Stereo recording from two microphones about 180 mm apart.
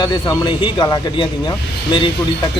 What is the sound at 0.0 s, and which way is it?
Speech, 25° left (ahead or behind).